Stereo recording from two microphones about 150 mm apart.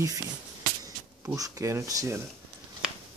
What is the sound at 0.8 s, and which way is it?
Speech, 25° right (ahead or behind).